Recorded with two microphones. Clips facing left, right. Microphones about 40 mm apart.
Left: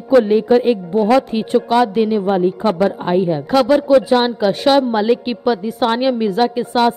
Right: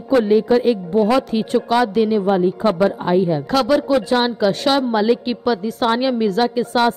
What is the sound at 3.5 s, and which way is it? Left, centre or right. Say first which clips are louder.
A woman's voice: left 5 dB; centre.